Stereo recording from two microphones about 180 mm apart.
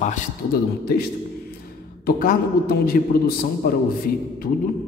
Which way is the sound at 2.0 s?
50° left (ahead or behind).